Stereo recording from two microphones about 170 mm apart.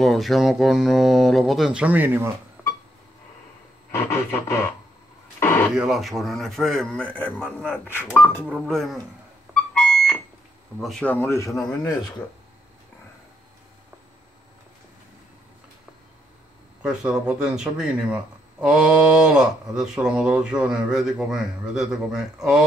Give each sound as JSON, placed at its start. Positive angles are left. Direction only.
{"t": 0.0, "sound": "speech", "side_deg": 0}
{"t": 3.9, "sound": "speech", "side_deg": 15}
{"t": 5.4, "sound": "radio", "side_deg": 15}
{"t": 5.8, "sound": "speech", "side_deg": 0}
{"t": 8.5, "sound": "speech", "side_deg": 0}
{"t": 9.5, "sound": "music", "side_deg": 5}
{"t": 10.8, "sound": "speech", "side_deg": 5}
{"t": 16.8, "sound": "speech", "side_deg": -5}